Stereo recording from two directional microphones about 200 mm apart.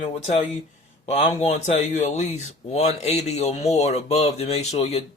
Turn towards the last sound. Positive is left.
turn(degrees=30)  # may be behind; listen again after turning